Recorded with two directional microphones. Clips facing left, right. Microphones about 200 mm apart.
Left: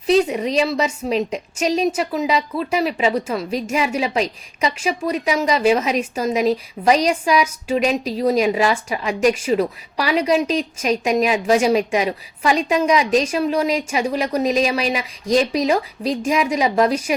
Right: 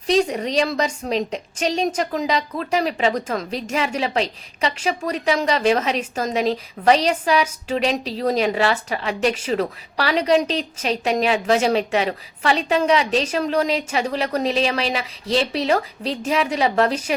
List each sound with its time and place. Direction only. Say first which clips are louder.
0.2 s a woman's voice: left 2 dB; 5° left (ahead or behind)